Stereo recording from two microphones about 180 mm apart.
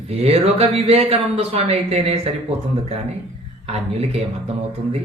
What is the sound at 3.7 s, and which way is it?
A man's voice, 35° right (ahead or behind).